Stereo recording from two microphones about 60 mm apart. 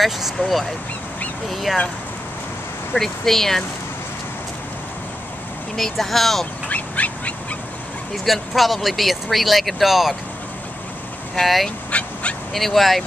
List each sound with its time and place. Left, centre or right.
0.0 s speech: centre
2.9 s speech: centre
5.8 s speech: centre
6.7 s duck: left
8.3 s speech: centre
11.4 s speech: centre
11.9 s dog: left
12.5 s speech: centre